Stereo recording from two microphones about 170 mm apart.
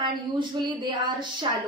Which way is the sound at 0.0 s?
25° right (ahead or behind).